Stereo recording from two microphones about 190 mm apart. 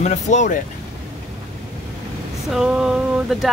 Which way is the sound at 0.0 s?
40° left (ahead or behind).